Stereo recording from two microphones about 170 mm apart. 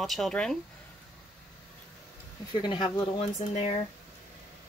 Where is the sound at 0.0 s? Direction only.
Centre (ahead or behind).